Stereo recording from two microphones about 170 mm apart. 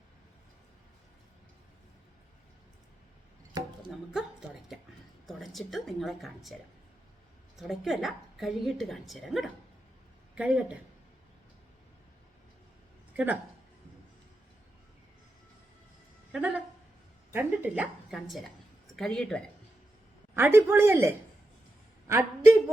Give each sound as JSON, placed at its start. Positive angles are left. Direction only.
{"t": 4.1, "sound": "a woman's voice", "side_deg": 0}
{"t": 7.7, "sound": "a woman's voice", "side_deg": 0}
{"t": 13.1, "sound": "speech", "side_deg": -10}
{"t": 16.3, "sound": "a woman's voice", "side_deg": -5}
{"t": 20.3, "sound": "a woman's voice", "side_deg": -15}